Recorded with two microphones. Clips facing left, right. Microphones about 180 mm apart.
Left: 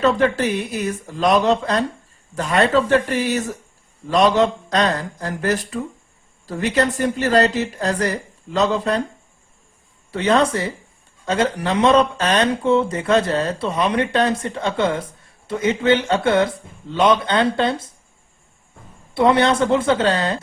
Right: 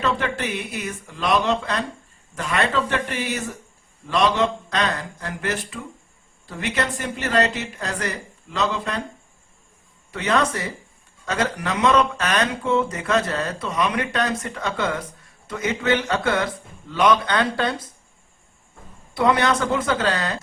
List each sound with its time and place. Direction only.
0.0 s speech: 35° left (ahead or behind)
4.7 s speech: 35° left (ahead or behind)
10.1 s speech: 30° left (ahead or behind)
19.1 s speech: 25° left (ahead or behind)